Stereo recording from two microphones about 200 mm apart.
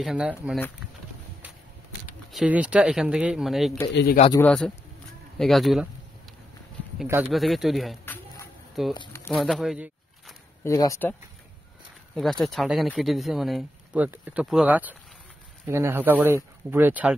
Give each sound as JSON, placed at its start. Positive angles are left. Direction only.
{"t": 0.0, "sound": "speech", "side_deg": -5}
{"t": 2.3, "sound": "speech", "side_deg": -5}
{"t": 3.9, "sound": "speech", "side_deg": 55}
{"t": 4.3, "sound": "speech", "side_deg": 10}
{"t": 7.3, "sound": "speech", "side_deg": 0}
{"t": 8.0, "sound": "a sound", "side_deg": 10}
{"t": 8.9, "sound": "speech", "side_deg": 20}
{"t": 9.3, "sound": "speech", "side_deg": 0}
{"t": 10.6, "sound": "speech", "side_deg": 15}
{"t": 12.2, "sound": "speech", "side_deg": 5}